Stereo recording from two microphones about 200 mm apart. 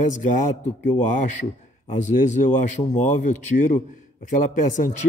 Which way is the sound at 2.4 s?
35° left (ahead or behind).